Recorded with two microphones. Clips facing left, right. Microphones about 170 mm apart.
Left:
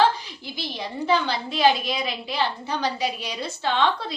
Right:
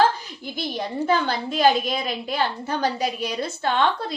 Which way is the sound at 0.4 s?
50° right (ahead or behind).